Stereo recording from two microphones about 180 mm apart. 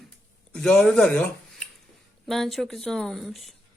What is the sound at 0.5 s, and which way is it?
Speech, 5° left (ahead or behind).